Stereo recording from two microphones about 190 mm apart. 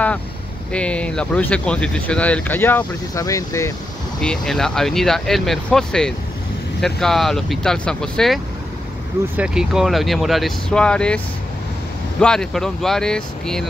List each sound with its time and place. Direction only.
0.7 s speech: 5° left (ahead or behind)
4.2 s speech: 5° left (ahead or behind)
9.4 s speech: 5° right (ahead or behind)
12.2 s speech: 5° left (ahead or behind)